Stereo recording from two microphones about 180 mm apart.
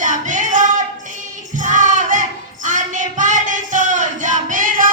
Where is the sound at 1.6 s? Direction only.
45° right (ahead or behind).